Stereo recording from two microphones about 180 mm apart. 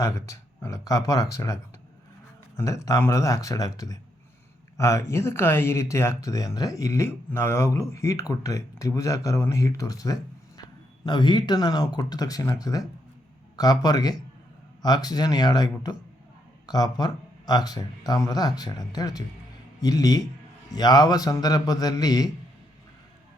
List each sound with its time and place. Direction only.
0.3 s speech: 15° left (ahead or behind)
2.6 s speech: 15° left (ahead or behind)